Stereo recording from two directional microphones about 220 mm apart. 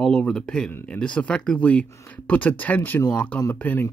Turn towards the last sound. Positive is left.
turn(degrees=10)  # may be behind; listen again after turning